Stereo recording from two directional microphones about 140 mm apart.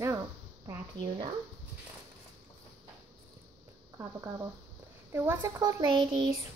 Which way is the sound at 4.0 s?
20° right (ahead or behind).